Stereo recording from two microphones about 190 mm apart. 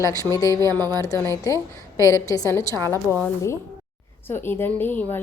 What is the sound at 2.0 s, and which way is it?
Speech, 15° left (ahead or behind).